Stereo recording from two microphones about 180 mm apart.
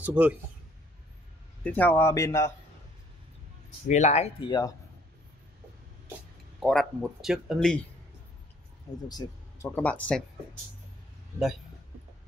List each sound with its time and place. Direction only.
0.0 s speech: 10° right (ahead or behind)
1.6 s speech: 10° left (ahead or behind)
3.8 s speech: 40° left (ahead or behind); by 4.7 s 25° left (ahead or behind)
6.6 s speech: centre (ahead or behind)
9.1 s a sound: 20° left (ahead or behind)
9.8 s speech: 10° left (ahead or behind)